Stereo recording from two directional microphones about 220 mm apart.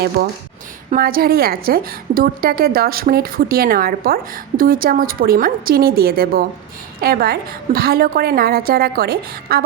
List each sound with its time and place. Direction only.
0.2 s a woman's voice: 45° right (ahead or behind)